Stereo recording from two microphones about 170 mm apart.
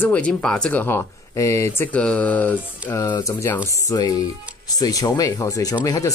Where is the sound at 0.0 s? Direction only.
10° left (ahead or behind).